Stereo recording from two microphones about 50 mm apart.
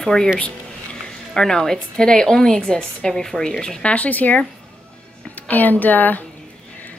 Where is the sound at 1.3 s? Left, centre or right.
Centre.